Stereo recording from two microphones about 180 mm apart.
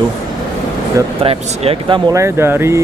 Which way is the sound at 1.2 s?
30° right (ahead or behind).